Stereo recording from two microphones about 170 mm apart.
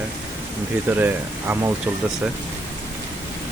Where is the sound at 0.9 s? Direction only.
10° right (ahead or behind).